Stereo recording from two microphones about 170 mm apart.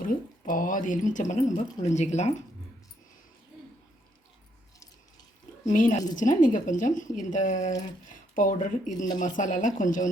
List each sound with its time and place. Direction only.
0.0 s speech: 55° left (ahead or behind)
5.6 s speech: 50° left (ahead or behind)